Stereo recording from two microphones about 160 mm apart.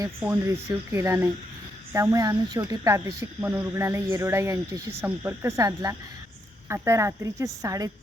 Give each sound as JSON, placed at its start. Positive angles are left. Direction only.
{"t": 0.2, "sound": "speech", "side_deg": -15}